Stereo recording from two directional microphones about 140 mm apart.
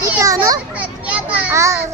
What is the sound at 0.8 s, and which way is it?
A child's voice, 10° right (ahead or behind).